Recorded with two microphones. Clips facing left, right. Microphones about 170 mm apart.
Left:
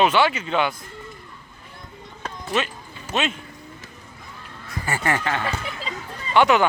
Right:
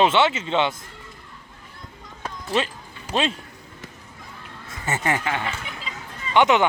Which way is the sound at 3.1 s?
30° right (ahead or behind).